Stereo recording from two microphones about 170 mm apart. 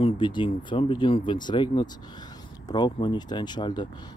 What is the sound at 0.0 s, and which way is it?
Speech, 30° left (ahead or behind).